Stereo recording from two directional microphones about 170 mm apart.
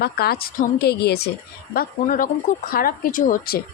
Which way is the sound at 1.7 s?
55° left (ahead or behind).